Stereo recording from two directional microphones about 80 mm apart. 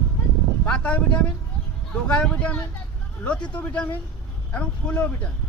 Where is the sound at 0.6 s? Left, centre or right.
Centre.